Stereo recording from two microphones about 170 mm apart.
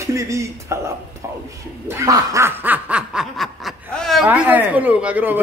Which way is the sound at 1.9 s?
20° right (ahead or behind).